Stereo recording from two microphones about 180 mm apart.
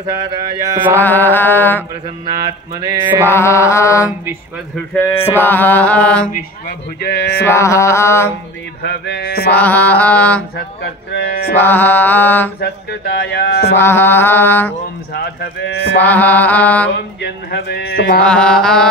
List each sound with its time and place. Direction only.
0.1 s a sound: 20° right (ahead or behind)
0.9 s male singing: 10° left (ahead or behind)
3.3 s male singing: 15° left (ahead or behind)
7.0 s speech: 60° left (ahead or behind)
7.4 s male singing: 15° left (ahead or behind)
8.8 s speech: 65° left (ahead or behind)
9.5 s male singing: 10° left (ahead or behind)
11.5 s male singing: 10° left (ahead or behind)
12.5 s speech: 65° left (ahead or behind)
13.7 s male singing: 10° left (ahead or behind)
16.0 s male singing: 10° left (ahead or behind)
17.2 s speech: 65° left (ahead or behind)
18.2 s mantra: 5° left (ahead or behind)